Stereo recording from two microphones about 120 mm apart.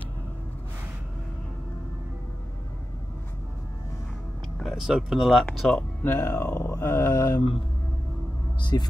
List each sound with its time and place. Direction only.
4.6 s speech: centre (ahead or behind)
5.8 s speech: 20° left (ahead or behind)
8.5 s speech: 40° left (ahead or behind)